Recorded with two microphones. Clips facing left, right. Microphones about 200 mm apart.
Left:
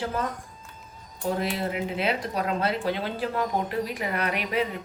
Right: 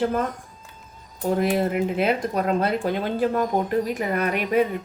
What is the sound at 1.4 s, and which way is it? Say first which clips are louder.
Speech: right 7 dB; 50° right (ahead or behind).